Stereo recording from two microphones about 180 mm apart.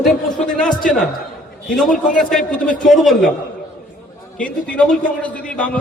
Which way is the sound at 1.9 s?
45° left (ahead or behind).